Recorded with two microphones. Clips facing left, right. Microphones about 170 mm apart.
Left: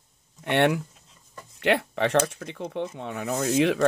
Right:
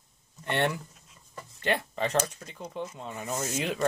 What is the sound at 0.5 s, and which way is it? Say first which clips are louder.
Speech: left 6 dB; 70° left (ahead or behind).